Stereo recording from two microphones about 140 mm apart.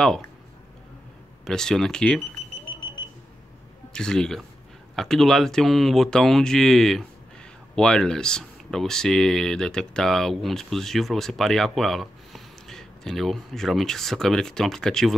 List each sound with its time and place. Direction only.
1.4 s speech: 5° left (ahead or behind)
3.9 s speech: 5° left (ahead or behind)